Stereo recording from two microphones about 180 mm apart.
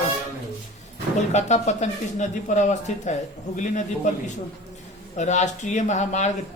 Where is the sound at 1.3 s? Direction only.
40° left (ahead or behind).